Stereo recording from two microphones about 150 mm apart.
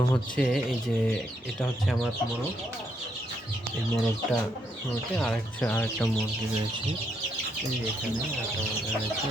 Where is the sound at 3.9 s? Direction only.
Centre (ahead or behind).